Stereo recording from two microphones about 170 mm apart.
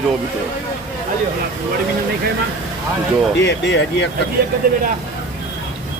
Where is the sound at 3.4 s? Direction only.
90° left.